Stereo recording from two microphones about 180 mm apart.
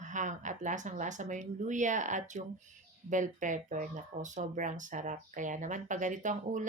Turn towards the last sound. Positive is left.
turn(degrees=-45)  # may be behind; listen again after turning